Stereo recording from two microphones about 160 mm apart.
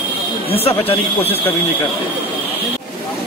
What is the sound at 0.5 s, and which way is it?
Speech, 35° left (ahead or behind).